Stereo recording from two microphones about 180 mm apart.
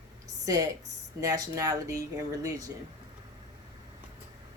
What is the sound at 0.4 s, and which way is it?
A woman's voice, 20° right (ahead or behind).